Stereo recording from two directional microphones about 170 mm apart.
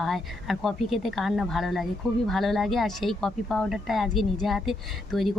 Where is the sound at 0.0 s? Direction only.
Centre (ahead or behind).